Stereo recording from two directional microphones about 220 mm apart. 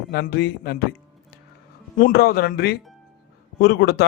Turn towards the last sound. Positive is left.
turn(degrees=45)  # may be behind; listen again after turning